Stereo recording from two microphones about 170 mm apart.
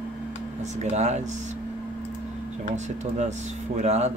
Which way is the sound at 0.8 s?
40° right (ahead or behind).